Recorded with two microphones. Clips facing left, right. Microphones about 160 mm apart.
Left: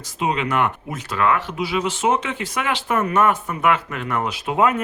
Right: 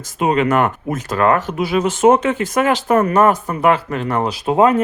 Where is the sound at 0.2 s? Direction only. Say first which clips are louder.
Right 6 dB; 50° right (ahead or behind).